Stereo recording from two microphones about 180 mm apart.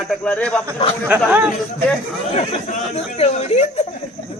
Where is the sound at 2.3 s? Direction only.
40° left (ahead or behind).